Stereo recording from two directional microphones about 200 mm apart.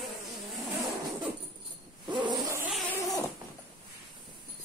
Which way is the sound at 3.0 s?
15° left (ahead or behind).